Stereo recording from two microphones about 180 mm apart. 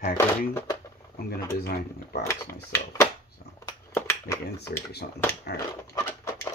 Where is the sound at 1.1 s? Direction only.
60° left (ahead or behind).